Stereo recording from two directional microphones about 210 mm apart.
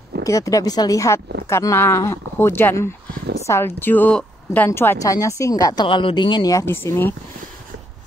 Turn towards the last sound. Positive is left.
turn(degrees=10)  # may be behind; listen again after turning